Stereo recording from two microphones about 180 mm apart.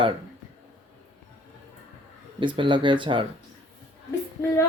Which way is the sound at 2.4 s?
25° right (ahead or behind).